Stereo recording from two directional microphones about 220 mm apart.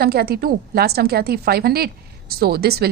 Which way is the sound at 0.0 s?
45° right (ahead or behind).